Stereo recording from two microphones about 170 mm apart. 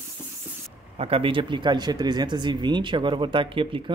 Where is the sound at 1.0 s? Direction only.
35° right (ahead or behind).